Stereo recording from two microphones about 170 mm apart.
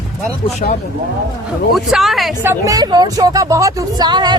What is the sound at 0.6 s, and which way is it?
Speech, 60° left (ahead or behind).